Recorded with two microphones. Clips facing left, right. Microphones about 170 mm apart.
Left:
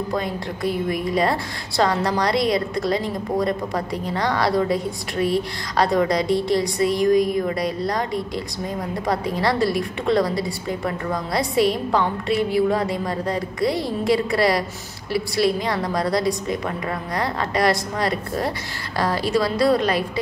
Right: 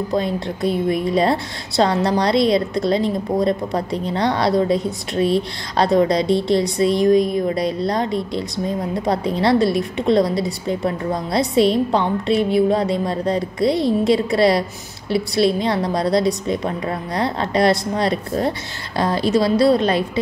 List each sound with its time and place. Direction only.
0.1 s a woman's voice: 25° right (ahead or behind)